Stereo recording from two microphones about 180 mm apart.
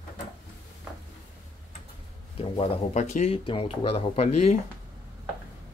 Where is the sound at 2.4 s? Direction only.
35° left (ahead or behind).